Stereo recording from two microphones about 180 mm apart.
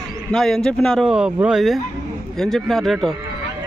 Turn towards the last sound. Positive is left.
turn(degrees=0)  # may be behind; listen again after turning